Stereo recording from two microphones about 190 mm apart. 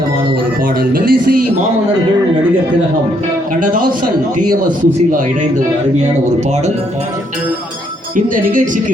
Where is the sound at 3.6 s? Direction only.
45° right (ahead or behind).